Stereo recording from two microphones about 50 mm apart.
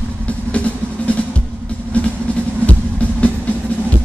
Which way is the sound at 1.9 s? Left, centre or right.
Left.